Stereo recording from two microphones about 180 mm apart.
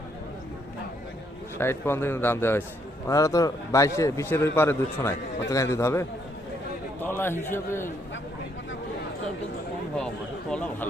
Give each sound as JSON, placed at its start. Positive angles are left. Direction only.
{"t": 1.5, "sound": "a man's voice", "side_deg": 15}